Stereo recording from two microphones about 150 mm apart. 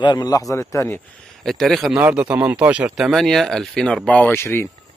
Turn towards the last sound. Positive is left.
turn(degrees=15)  # may be behind; listen again after turning